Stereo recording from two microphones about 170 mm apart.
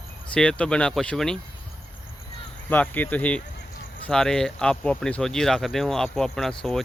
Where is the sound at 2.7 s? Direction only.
10° left (ahead or behind).